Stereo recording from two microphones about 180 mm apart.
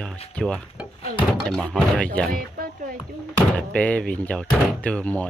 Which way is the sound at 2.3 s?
50° right (ahead or behind).